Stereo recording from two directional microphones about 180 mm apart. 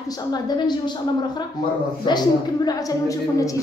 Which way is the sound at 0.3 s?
25° left (ahead or behind).